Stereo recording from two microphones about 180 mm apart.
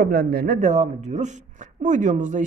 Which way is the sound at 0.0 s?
55° right (ahead or behind).